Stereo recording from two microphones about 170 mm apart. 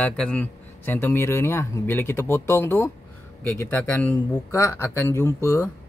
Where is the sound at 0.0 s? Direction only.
10° left (ahead or behind).